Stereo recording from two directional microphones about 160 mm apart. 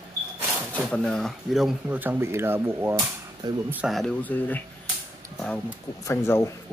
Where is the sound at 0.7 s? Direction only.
5° left (ahead or behind); by 3.8 s 15° right (ahead or behind).